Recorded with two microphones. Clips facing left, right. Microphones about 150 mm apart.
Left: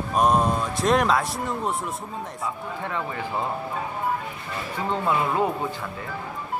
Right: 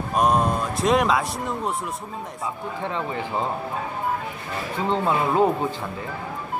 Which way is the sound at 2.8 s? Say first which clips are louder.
Right 2 dB; 20° right (ahead or behind).